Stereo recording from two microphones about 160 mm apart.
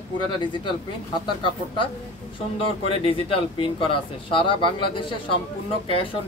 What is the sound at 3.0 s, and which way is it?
Speech, 35° left (ahead or behind).